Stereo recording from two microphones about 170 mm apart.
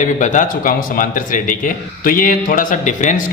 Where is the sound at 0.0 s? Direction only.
45° left (ahead or behind).